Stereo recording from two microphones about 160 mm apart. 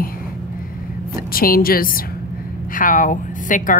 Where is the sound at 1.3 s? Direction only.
65° left (ahead or behind).